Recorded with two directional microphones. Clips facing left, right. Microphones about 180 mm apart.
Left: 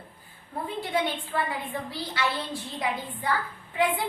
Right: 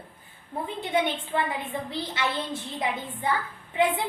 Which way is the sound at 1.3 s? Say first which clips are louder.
Right 2 dB; 20° right (ahead or behind).